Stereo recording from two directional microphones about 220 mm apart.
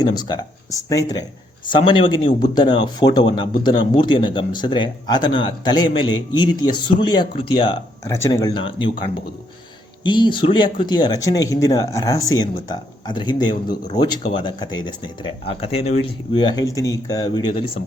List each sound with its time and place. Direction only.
0.0 s speech: 20° left (ahead or behind)
10.0 s speech: 20° left (ahead or behind)